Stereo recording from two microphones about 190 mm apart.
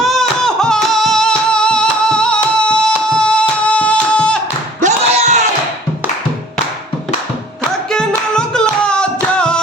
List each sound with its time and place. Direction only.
0.0 s music: centre (ahead or behind)
4.8 s a sound: 35° right (ahead or behind)
7.9 s music: 5° left (ahead or behind)